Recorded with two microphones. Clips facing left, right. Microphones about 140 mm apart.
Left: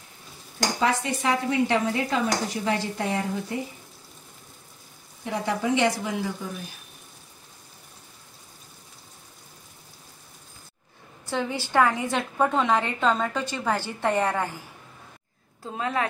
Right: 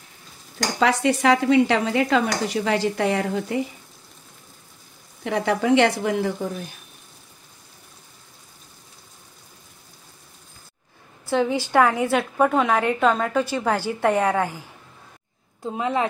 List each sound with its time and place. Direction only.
0.7 s stir: 90° right
5.2 s a woman's voice: 75° right (ahead or behind); by 6.3 s 60° right (ahead or behind)
11.2 s a woman's voice: 15° right (ahead or behind)
15.6 s a woman's voice: 15° right (ahead or behind)